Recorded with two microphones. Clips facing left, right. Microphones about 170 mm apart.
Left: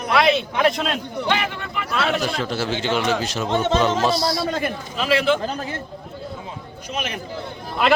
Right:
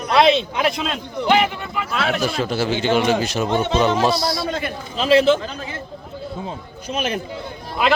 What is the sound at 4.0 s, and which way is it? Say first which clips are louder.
Speech: right 1 dB; centre (ahead or behind).